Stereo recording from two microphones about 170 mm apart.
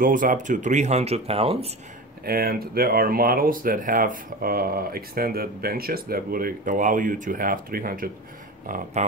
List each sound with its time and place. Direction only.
0.0 s speech: 55° right (ahead or behind); by 1.7 s 35° right (ahead or behind)
2.2 s speech: 60° right (ahead or behind)